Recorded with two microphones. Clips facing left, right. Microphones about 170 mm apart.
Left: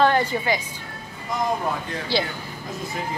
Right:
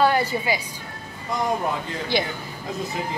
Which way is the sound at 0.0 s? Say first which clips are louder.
Left 1 dB; 10° right (ahead or behind).